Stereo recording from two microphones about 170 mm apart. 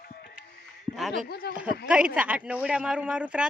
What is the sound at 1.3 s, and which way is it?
Speech, 65° left (ahead or behind).